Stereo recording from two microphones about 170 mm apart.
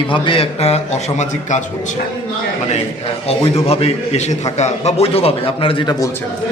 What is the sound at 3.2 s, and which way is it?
A man's voice, 35° left (ahead or behind).